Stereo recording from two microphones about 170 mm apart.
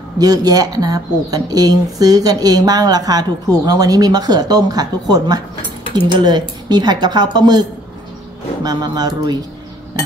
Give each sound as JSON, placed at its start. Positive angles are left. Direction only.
{"t": 0.2, "sound": "a woman's voice", "side_deg": -20}
{"t": 8.6, "sound": "a woman's voice", "side_deg": -25}